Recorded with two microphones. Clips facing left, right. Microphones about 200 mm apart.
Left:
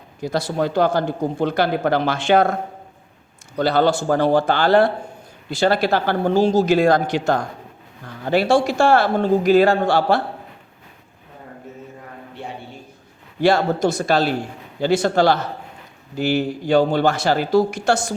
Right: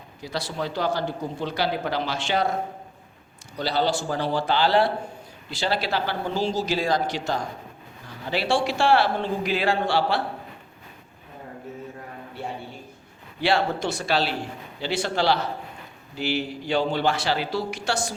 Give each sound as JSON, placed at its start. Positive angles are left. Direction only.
{"t": 0.2, "sound": "speech", "side_deg": 45}
{"t": 3.6, "sound": "speech", "side_deg": 55}
{"t": 13.4, "sound": "speech", "side_deg": 45}